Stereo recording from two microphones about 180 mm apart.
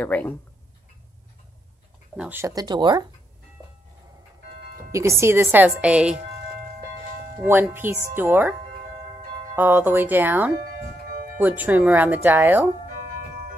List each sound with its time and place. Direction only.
0.0 s speech: 10° left (ahead or behind)
2.1 s speech: 10° right (ahead or behind)
4.9 s speech: 15° right (ahead or behind)
7.4 s speech: 10° right (ahead or behind)
9.6 s speech: 10° right (ahead or behind)